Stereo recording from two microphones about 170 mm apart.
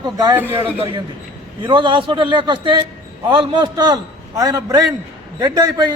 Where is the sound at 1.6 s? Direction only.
30° right (ahead or behind).